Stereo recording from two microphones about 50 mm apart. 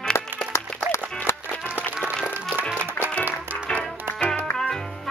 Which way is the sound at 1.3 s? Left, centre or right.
Left.